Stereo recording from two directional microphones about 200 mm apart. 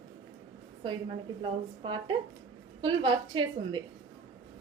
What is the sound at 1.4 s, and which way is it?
A woman's voice, 25° right (ahead or behind).